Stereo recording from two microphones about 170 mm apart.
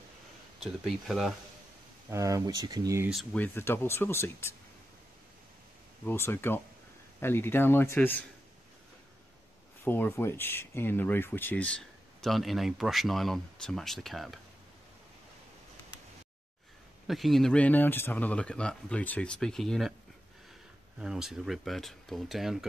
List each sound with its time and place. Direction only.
0.8 s speech: centre (ahead or behind)
2.0 s speech: 20° right (ahead or behind)
3.3 s speech: 10° left (ahead or behind)
6.0 s speech: 15° left (ahead or behind)
9.8 s speech: 10° left (ahead or behind)
17.1 s speech: centre (ahead or behind)
21.0 s speech: 5° right (ahead or behind)